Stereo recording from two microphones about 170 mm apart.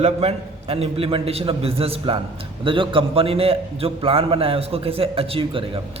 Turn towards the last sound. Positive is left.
turn(degrees=-30)  # may be behind; listen again after turning